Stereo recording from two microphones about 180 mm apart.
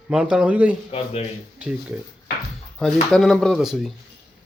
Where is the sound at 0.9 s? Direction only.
30° left (ahead or behind).